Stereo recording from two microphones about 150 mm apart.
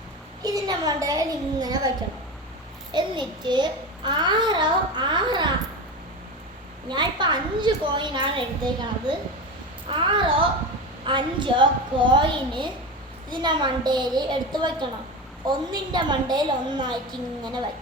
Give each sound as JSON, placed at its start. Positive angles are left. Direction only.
{"t": 0.4, "sound": "a child's voice", "side_deg": -25}
{"t": 2.9, "sound": "a child's voice", "side_deg": -30}
{"t": 6.8, "sound": "a child's voice", "side_deg": -30}